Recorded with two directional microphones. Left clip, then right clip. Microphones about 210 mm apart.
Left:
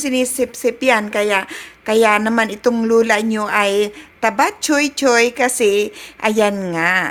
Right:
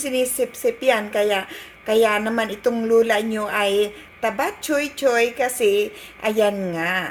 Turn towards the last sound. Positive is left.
turn(degrees=45)  # may be behind; listen again after turning